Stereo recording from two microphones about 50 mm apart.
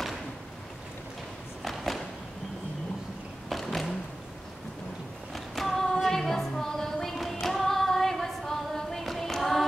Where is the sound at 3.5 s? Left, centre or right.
Centre.